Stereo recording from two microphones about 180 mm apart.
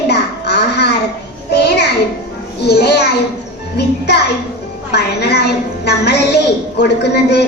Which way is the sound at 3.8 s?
65° left (ahead or behind).